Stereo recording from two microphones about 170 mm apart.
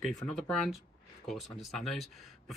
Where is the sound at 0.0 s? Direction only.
5° left (ahead or behind).